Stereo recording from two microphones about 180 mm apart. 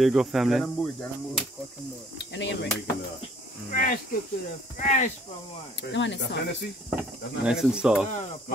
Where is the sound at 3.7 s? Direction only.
50° left (ahead or behind).